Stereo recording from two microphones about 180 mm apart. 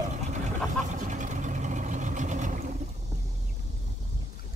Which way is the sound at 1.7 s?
40° right (ahead or behind).